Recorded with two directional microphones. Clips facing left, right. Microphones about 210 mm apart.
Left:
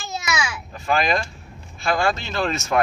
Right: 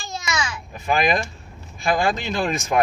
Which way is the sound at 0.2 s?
10° left (ahead or behind).